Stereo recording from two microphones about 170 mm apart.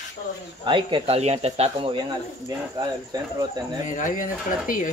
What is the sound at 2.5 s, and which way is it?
Speech, 25° right (ahead or behind).